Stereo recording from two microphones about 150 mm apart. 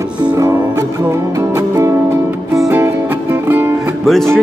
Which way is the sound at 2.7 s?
15° right (ahead or behind).